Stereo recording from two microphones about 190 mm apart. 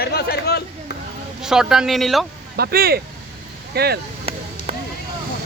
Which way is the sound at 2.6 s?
55° right (ahead or behind).